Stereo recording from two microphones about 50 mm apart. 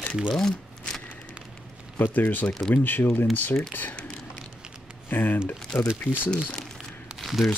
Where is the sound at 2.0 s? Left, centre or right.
Left.